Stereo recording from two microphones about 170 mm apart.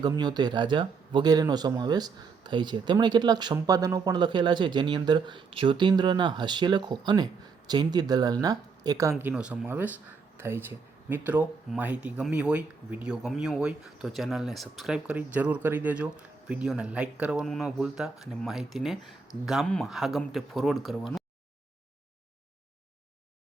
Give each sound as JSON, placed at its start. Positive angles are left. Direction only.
{"t": 0.0, "sound": "speech", "side_deg": -25}